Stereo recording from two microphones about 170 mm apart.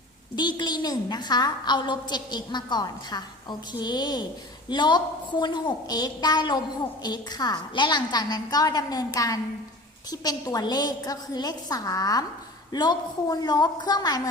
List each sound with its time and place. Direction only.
0.3 s a woman's voice: 25° left (ahead or behind)